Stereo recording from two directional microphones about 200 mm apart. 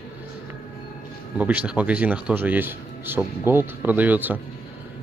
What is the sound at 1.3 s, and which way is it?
Speech, 5° right (ahead or behind).